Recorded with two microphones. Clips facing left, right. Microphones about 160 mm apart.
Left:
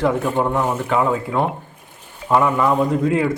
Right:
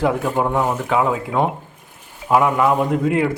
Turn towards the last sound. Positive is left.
turn(degrees=-5)  # may be behind; listen again after turning